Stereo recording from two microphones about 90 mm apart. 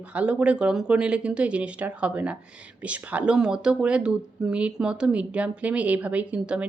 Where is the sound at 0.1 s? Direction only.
15° right (ahead or behind).